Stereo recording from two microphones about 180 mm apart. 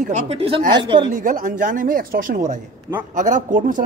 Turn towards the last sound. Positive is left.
turn(degrees=-45)  # may be behind; listen again after turning